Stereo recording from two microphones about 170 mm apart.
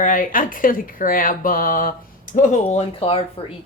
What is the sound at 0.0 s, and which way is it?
Speech, 50° left (ahead or behind).